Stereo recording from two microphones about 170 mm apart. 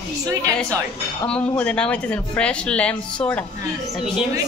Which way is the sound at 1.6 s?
5° left (ahead or behind).